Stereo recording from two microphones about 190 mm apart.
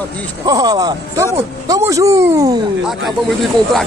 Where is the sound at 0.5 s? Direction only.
20° right (ahead or behind).